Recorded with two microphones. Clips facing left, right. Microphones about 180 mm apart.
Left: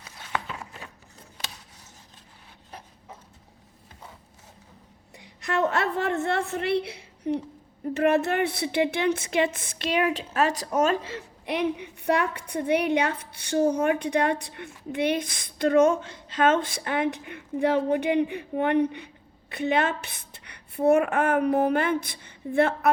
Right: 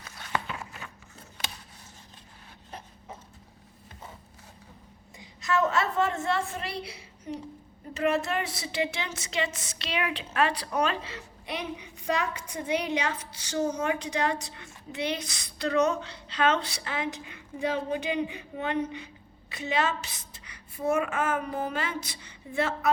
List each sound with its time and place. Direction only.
0.3 s walk: 5° right (ahead or behind)
5.1 s a woman's voice: 65° left (ahead or behind)